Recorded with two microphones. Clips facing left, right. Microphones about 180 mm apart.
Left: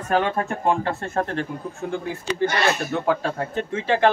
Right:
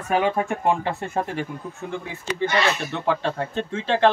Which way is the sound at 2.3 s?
45° left (ahead or behind).